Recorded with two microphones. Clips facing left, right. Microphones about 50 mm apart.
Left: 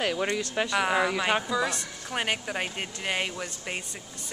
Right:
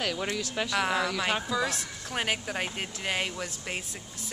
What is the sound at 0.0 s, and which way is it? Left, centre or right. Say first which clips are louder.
A woman's voice: left 3 dB; centre.